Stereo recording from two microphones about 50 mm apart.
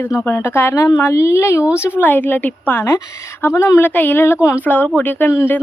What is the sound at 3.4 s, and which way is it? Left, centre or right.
Speech, left.